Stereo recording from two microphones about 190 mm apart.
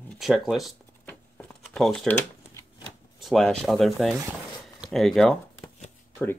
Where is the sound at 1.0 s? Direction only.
5° left (ahead or behind).